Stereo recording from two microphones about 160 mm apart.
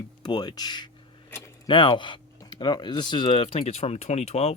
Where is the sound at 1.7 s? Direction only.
30° left (ahead or behind).